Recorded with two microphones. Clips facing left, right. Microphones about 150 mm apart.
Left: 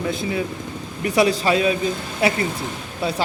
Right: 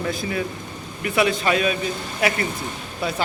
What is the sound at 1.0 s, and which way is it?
A man's voice, 35° left (ahead or behind).